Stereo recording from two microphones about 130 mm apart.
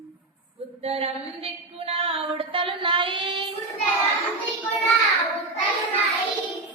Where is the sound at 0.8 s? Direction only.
50° right (ahead or behind).